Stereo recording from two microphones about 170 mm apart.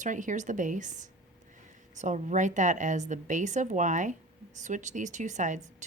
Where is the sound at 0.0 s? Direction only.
50° right (ahead or behind).